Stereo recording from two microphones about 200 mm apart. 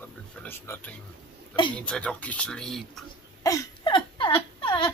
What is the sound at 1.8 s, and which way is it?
Speech, 5° left (ahead or behind).